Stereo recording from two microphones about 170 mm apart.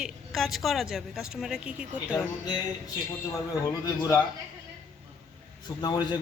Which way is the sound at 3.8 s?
20° left (ahead or behind).